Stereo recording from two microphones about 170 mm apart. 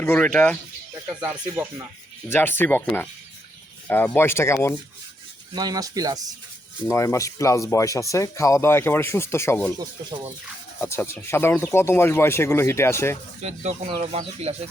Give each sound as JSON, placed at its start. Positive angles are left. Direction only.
{"t": 0.0, "sound": "speech", "side_deg": 5}
{"t": 1.2, "sound": "speech", "side_deg": -5}
{"t": 2.3, "sound": "speech", "side_deg": 10}
{"t": 5.5, "sound": "speech", "side_deg": -20}
{"t": 6.8, "sound": "speech", "side_deg": 15}
{"t": 10.8, "sound": "speech", "side_deg": 15}
{"t": 13.4, "sound": "speech", "side_deg": -40}